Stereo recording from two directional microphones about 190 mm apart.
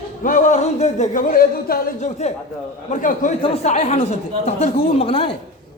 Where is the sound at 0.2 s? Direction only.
45° left (ahead or behind).